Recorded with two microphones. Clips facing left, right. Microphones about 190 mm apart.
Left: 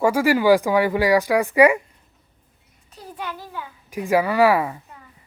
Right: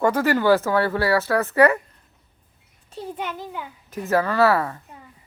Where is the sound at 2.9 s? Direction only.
25° right (ahead or behind).